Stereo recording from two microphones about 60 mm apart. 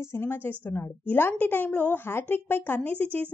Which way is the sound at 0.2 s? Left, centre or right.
Left.